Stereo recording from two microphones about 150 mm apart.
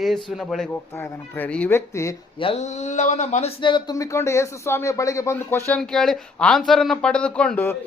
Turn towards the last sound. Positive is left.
turn(degrees=10)  # may be behind; listen again after turning